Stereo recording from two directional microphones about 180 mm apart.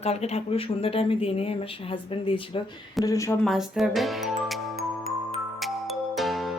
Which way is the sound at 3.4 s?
Centre (ahead or behind).